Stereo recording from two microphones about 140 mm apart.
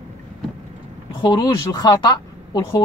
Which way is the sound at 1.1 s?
35° left (ahead or behind).